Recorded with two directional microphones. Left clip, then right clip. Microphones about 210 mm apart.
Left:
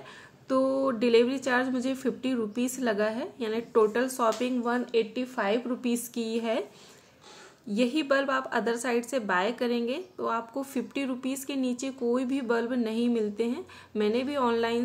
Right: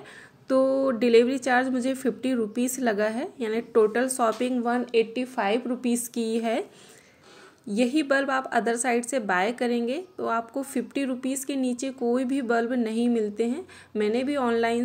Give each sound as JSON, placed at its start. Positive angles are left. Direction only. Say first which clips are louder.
{"t": 0.5, "sound": "a woman's voice", "louder": "right 4 dB", "side_deg": -15}
{"t": 7.7, "sound": "a woman's voice", "louder": "right 2 dB", "side_deg": -15}